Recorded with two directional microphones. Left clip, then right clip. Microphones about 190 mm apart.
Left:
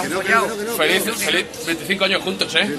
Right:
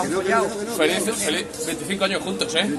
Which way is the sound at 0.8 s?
15° left (ahead or behind).